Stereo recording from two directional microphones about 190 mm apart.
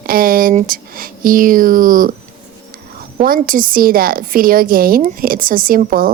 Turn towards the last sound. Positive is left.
turn(degrees=-50)  # may be behind; listen again after turning